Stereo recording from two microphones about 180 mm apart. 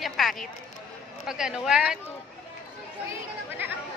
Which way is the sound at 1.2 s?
5° right (ahead or behind).